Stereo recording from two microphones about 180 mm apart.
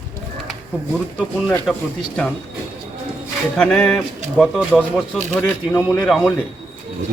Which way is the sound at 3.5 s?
5° left (ahead or behind).